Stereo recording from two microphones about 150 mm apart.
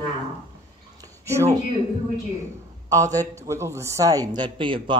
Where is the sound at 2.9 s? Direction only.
25° right (ahead or behind).